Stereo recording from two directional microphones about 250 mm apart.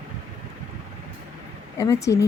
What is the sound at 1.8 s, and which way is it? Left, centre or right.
Speech, centre.